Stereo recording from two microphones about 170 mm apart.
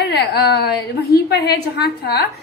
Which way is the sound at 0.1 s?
70° left (ahead or behind).